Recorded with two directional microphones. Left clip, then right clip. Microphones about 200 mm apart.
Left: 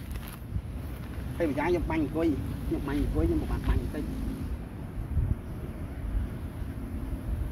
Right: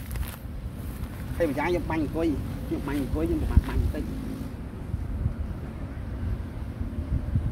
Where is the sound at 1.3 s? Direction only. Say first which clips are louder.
Right 2 dB; 20° right (ahead or behind).